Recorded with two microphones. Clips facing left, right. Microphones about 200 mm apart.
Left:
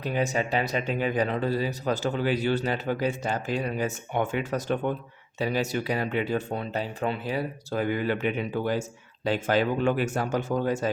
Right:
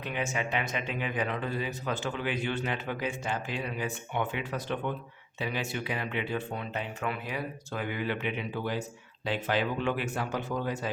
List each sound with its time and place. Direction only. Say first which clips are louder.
0.0 s speech: left 6 dB; 35° left (ahead or behind)